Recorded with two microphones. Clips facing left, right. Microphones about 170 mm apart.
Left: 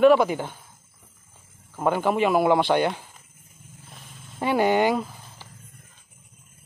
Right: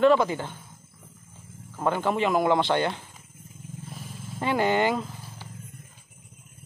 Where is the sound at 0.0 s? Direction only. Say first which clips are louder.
Left 3 dB; 15° left (ahead or behind).